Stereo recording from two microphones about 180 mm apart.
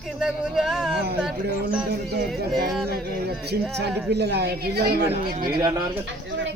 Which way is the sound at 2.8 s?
60° right (ahead or behind).